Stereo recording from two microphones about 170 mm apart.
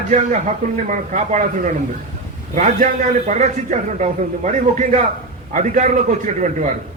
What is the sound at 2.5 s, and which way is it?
A man's voice, 50° right (ahead or behind).